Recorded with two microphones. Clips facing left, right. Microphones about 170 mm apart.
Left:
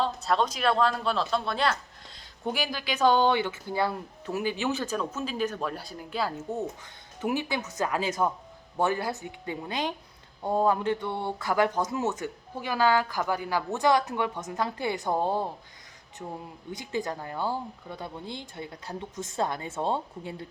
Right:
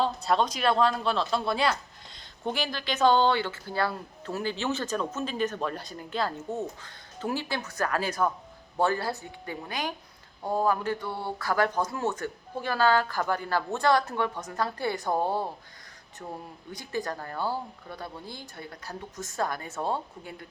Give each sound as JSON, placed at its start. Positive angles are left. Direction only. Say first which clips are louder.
{"t": 0.0, "sound": "speech", "louder": "right 1 dB", "side_deg": 0}
{"t": 2.1, "sound": "speech", "louder": "even", "side_deg": 5}
{"t": 16.7, "sound": "speech", "louder": "left 1 dB", "side_deg": 20}